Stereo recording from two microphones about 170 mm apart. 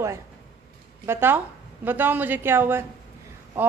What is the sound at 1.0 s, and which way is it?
A woman's voice, 15° right (ahead or behind).